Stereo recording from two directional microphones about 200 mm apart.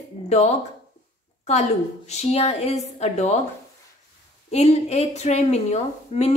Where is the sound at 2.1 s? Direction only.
30° left (ahead or behind).